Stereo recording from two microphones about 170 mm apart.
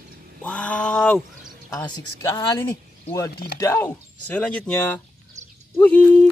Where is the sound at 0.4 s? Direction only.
5° left (ahead or behind).